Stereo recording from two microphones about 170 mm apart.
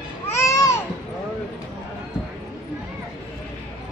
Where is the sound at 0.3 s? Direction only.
15° left (ahead or behind).